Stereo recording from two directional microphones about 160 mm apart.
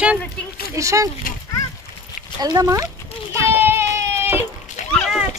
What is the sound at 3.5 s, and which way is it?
Baby cry, 15° right (ahead or behind).